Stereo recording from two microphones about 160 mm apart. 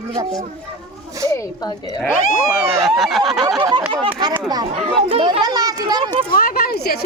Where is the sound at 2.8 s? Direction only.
Centre (ahead or behind).